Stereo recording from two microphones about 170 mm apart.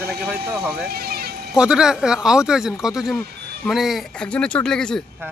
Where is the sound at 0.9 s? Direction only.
65° right (ahead or behind).